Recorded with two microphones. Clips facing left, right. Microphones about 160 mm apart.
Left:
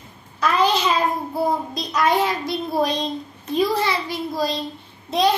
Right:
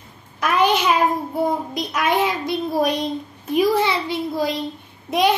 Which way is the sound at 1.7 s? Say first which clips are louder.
Left 1 dB; 15° right (ahead or behind).